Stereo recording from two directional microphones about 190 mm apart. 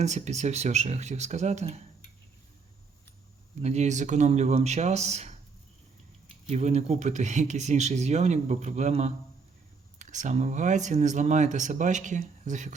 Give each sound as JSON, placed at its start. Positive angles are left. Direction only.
{"t": 0.0, "sound": "speech", "side_deg": -35}
{"t": 3.6, "sound": "speech", "side_deg": -35}
{"t": 6.5, "sound": "speech", "side_deg": -35}